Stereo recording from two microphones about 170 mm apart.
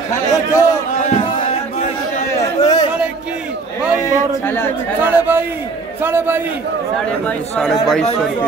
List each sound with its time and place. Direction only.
0.1 s a man's voice: 15° left (ahead or behind)
1.0 s a sound: 40° left (ahead or behind)
2.6 s chatter: 25° left (ahead or behind)
4.0 s a man's voice: 15° left (ahead or behind)
5.0 s a man's voice: 10° right (ahead or behind)
7.2 s speech: 5° left (ahead or behind)